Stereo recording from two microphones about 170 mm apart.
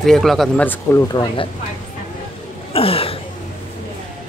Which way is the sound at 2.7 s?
35° left (ahead or behind).